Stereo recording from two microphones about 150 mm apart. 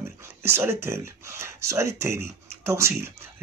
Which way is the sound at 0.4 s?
15° right (ahead or behind).